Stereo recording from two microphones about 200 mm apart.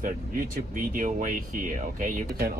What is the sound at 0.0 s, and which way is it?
Speech, 45° right (ahead or behind).